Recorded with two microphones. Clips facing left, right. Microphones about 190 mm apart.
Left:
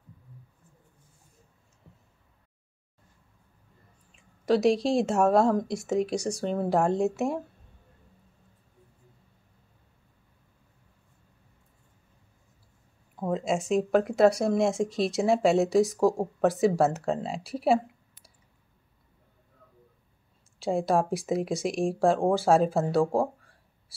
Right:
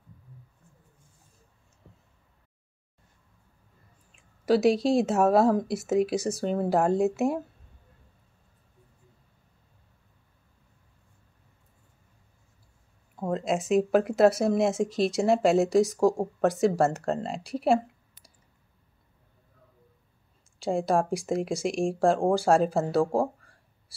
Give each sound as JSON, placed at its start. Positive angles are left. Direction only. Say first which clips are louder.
{"t": 4.1, "sound": "speech", "louder": "right 1 dB", "side_deg": 0}
{"t": 13.1, "sound": "speech", "louder": "even", "side_deg": 0}
{"t": 20.5, "sound": "speech", "louder": "even", "side_deg": 0}